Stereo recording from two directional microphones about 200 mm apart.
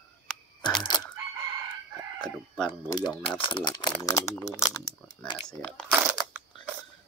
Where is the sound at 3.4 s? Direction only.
25° left (ahead or behind).